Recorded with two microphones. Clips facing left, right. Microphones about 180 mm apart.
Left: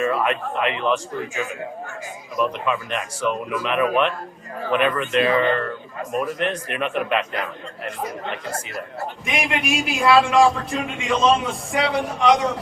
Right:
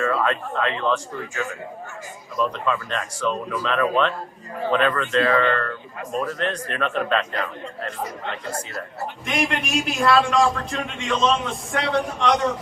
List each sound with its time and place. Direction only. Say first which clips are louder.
0.0 s speech: left 1 dB; 15° left (ahead or behind)
2.3 s speech: left 1 dB; 15° left (ahead or behind)
9.2 s a man's voice: even; 5° left (ahead or behind)